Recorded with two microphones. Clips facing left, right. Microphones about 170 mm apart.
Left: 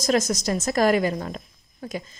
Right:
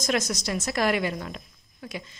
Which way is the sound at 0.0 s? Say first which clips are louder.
Left 5 dB; 45° left (ahead or behind).